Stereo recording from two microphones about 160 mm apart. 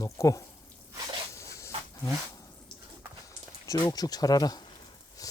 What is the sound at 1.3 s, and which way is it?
Dog, 15° left (ahead or behind).